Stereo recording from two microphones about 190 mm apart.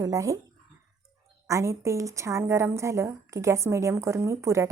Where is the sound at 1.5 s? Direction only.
15° right (ahead or behind).